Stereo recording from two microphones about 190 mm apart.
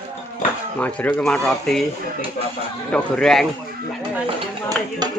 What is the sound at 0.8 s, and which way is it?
Speech, 10° left (ahead or behind).